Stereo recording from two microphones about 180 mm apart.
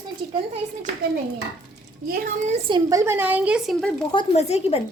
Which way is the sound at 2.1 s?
50° right (ahead or behind).